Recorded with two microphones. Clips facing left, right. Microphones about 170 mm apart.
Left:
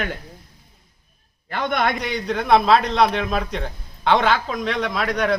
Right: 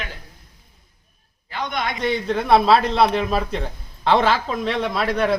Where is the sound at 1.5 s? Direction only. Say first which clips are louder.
Left 4 dB; 55° left (ahead or behind).